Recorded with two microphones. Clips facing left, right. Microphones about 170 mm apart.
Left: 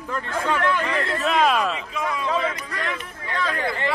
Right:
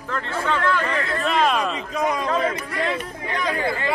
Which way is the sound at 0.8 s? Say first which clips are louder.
Even; centre (ahead or behind).